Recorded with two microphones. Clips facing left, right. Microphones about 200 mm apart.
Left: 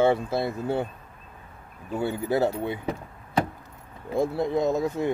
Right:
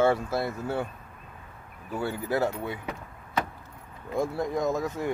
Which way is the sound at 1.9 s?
20° left (ahead or behind).